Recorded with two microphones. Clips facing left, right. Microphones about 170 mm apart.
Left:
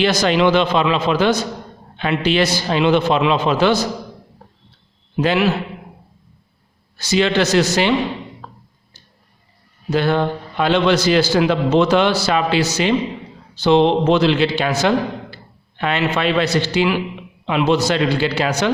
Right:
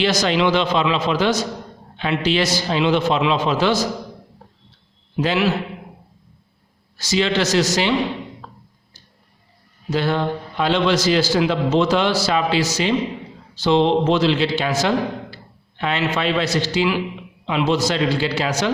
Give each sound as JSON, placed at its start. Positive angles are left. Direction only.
{"t": 0.0, "sound": "a man's voice", "side_deg": 55}
{"t": 5.1, "sound": "a man's voice", "side_deg": 55}
{"t": 6.9, "sound": "a man's voice", "side_deg": 60}
{"t": 9.9, "sound": "a man's voice", "side_deg": 60}